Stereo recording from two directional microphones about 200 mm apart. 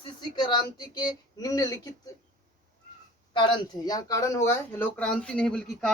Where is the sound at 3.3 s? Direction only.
20° left (ahead or behind).